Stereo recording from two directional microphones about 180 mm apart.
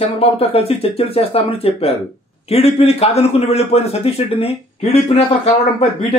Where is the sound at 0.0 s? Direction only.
35° left (ahead or behind).